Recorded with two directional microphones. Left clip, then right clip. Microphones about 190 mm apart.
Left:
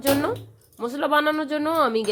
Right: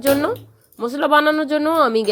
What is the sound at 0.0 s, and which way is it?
Speech, 25° right (ahead or behind).